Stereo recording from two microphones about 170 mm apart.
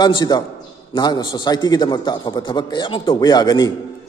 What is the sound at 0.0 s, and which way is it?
A man's voice, 25° left (ahead or behind).